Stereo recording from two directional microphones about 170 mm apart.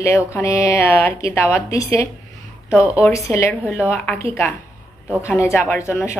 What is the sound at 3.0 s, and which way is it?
Speech, 15° left (ahead or behind).